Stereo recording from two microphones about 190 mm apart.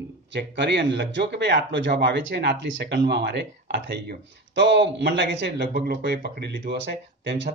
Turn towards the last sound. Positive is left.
turn(degrees=-60)  # may be behind; listen again after turning